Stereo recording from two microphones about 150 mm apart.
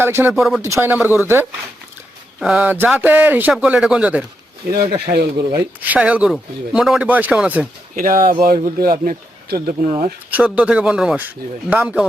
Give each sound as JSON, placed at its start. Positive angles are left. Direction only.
{"t": 0.0, "sound": "a man's voice", "side_deg": -15}
{"t": 0.3, "sound": "speech", "side_deg": 0}
{"t": 0.6, "sound": "a man's voice", "side_deg": -15}
{"t": 5.0, "sound": "speech", "side_deg": -90}
{"t": 5.8, "sound": "a man's voice", "side_deg": -10}
{"t": 7.9, "sound": "speech", "side_deg": -75}
{"t": 9.8, "sound": "speech", "side_deg": -45}
{"t": 10.3, "sound": "a man's voice", "side_deg": -10}